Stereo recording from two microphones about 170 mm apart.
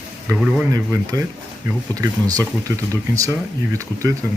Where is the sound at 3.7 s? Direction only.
20° right (ahead or behind).